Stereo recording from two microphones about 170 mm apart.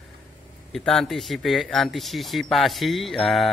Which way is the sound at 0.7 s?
Centre (ahead or behind).